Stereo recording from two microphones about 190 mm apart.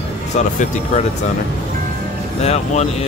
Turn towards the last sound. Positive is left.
turn(degrees=35)  # may be behind; listen again after turning